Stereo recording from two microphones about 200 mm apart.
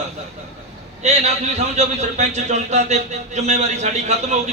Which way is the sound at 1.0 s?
35° right (ahead or behind).